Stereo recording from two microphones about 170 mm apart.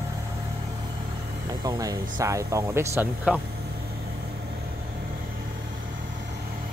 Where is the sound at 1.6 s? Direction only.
20° right (ahead or behind).